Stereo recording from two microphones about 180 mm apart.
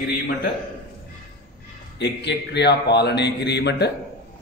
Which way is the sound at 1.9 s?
70° left (ahead or behind).